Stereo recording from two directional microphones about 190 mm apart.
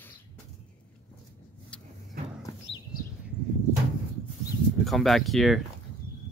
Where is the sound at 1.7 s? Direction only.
5° left (ahead or behind).